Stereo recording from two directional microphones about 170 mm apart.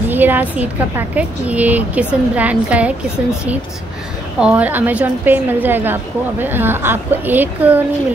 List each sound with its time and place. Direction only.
0.1 s a woman's voice: 10° right (ahead or behind)